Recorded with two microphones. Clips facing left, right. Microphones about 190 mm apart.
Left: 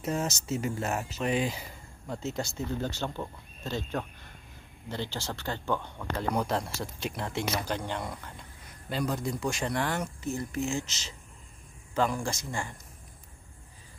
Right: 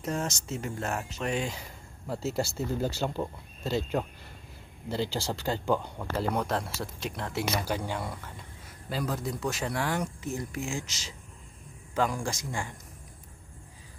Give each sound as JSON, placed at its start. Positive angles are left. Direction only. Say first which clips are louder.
{"t": 0.0, "sound": "speech", "louder": "left 1 dB", "side_deg": 0}
{"t": 4.8, "sound": "speech", "louder": "right 5 dB", "side_deg": -35}
{"t": 5.1, "sound": "speech", "louder": "right 4 dB", "side_deg": -10}
{"t": 6.3, "sound": "speech", "louder": "even", "side_deg": 0}
{"t": 7.6, "sound": "speech", "louder": "right 1 dB", "side_deg": -10}